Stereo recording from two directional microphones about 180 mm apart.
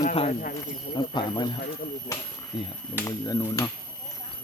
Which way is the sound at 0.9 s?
25° left (ahead or behind).